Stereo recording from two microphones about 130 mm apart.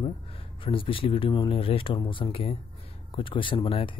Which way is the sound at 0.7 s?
45° left (ahead or behind).